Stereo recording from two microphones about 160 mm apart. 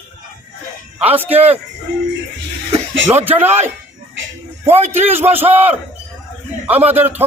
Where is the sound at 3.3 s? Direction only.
15° right (ahead or behind).